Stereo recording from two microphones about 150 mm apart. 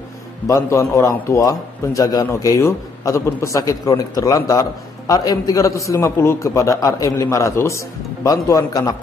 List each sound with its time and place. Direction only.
0.5 s a man's voice: 20° left (ahead or behind)